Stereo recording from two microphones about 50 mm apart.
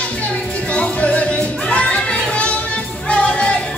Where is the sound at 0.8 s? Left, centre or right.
Left.